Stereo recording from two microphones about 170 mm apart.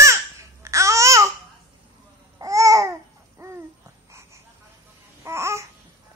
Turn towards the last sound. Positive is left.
turn(degrees=-15)  # may be behind; listen again after turning